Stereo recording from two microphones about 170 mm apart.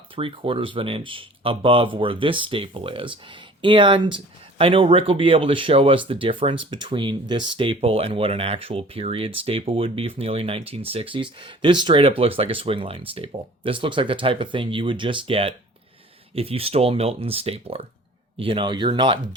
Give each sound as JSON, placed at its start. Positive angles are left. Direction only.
{"t": 0.2, "sound": "speech", "side_deg": -30}